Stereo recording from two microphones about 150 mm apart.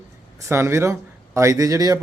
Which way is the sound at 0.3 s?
20° right (ahead or behind).